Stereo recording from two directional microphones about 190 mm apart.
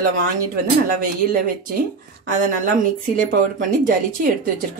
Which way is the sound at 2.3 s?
40° right (ahead or behind).